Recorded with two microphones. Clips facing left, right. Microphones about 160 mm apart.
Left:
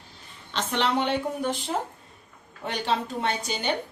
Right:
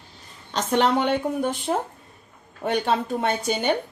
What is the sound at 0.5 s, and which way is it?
Speech, 45° right (ahead or behind).